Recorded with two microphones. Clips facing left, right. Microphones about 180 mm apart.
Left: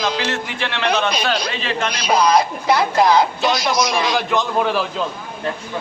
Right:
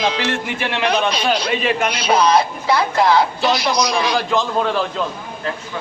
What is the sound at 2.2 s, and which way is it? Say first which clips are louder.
Speech: left 1 dB; 10° left (ahead or behind).